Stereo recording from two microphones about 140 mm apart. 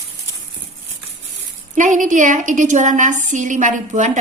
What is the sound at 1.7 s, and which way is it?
A woman's voice, 65° right (ahead or behind).